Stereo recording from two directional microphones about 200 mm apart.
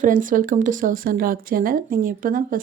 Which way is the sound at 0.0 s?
40° right (ahead or behind).